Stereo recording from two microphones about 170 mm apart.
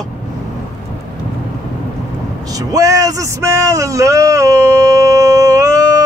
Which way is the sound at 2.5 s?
20° right (ahead or behind).